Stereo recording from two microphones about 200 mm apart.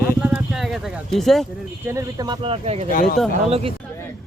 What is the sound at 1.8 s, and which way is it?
Speech, 15° right (ahead or behind).